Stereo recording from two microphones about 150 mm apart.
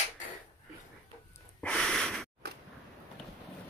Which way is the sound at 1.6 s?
5° left (ahead or behind).